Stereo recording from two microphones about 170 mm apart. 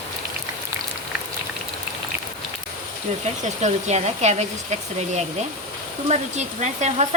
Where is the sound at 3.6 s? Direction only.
40° right (ahead or behind).